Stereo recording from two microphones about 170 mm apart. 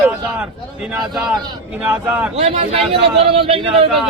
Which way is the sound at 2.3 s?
40° right (ahead or behind).